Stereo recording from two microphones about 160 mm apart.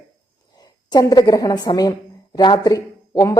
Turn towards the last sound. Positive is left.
turn(degrees=20)  # may be behind; listen again after turning